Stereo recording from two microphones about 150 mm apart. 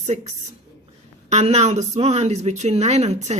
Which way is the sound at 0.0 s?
50° right (ahead or behind).